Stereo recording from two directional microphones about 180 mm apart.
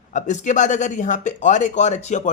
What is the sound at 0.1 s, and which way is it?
Speech, 45° left (ahead or behind).